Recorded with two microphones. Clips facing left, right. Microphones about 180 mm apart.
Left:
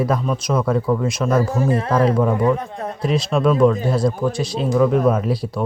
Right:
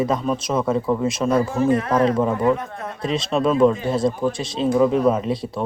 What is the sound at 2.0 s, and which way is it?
Speech, centre (ahead or behind).